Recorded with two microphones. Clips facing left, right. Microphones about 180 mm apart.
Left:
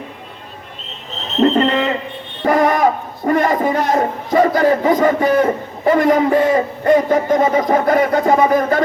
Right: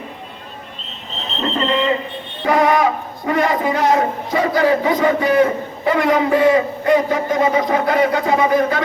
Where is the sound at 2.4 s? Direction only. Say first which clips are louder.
Left 1 dB; 45° left (ahead or behind).